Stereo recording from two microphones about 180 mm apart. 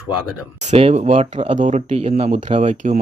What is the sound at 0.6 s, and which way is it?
Speech, 35° right (ahead or behind).